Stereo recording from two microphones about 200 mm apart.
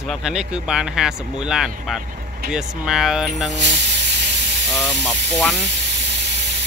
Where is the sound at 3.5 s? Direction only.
60° right (ahead or behind).